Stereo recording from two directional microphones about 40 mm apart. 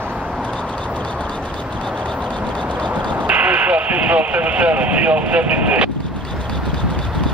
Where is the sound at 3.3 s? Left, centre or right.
Right.